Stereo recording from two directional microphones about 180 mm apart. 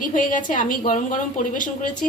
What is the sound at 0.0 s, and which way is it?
A woman's voice, 45° left (ahead or behind).